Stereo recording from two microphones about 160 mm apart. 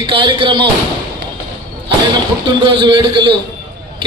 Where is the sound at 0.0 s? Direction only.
35° right (ahead or behind).